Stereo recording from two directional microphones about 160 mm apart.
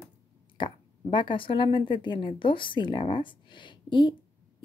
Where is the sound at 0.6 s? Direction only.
30° left (ahead or behind).